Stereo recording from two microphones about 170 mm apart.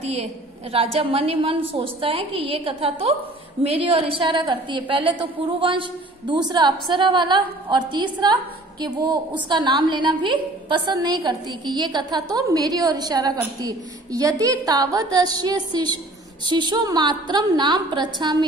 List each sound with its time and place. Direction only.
0.1 s a woman's voice: 35° right (ahead or behind)